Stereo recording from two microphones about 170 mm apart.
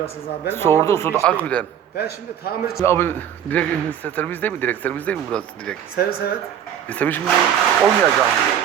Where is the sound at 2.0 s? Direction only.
65° left (ahead or behind).